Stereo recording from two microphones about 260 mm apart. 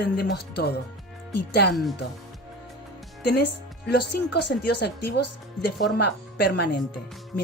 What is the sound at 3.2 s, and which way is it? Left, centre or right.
Speech, left.